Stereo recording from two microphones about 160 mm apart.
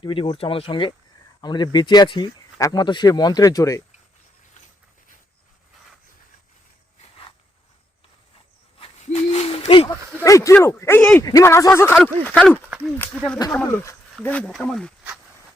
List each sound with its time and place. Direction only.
0.0 s speech: 30° left (ahead or behind)
8.8 s a sound: 40° left (ahead or behind)
10.2 s speech: 20° left (ahead or behind)
11.2 s speech: 20° left (ahead or behind); by 14.9 s 5° left (ahead or behind)